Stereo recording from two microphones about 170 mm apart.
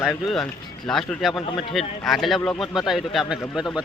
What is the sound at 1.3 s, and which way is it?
Speech, 30° left (ahead or behind).